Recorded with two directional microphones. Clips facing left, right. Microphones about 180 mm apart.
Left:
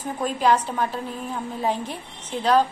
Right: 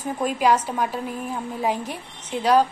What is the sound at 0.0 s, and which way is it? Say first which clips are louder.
A woman's voice: right 1 dB; 10° right (ahead or behind).